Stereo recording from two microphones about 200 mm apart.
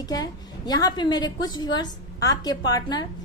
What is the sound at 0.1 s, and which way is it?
A woman's voice, 20° left (ahead or behind).